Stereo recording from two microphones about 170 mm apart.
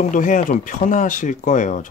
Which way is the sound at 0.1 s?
50° left (ahead or behind).